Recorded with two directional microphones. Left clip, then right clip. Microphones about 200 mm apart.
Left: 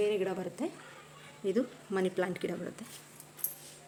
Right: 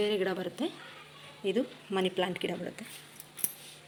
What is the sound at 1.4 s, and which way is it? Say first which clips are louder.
Speech: right 1 dB; 5° left (ahead or behind).